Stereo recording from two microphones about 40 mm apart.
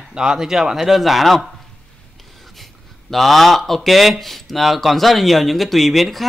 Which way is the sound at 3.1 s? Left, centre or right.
Centre.